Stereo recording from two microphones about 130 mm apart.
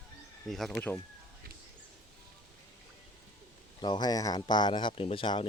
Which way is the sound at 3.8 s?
35° left (ahead or behind).